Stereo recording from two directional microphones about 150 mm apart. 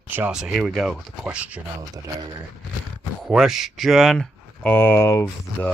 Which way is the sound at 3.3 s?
5° right (ahead or behind).